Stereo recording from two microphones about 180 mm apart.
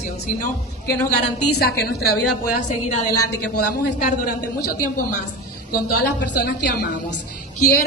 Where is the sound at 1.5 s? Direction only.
60° left (ahead or behind).